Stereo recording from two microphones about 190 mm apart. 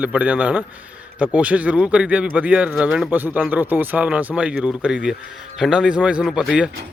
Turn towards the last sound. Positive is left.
turn(degrees=-5)  # may be behind; listen again after turning